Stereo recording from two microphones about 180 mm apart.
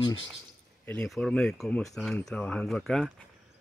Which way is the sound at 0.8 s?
5° left (ahead or behind).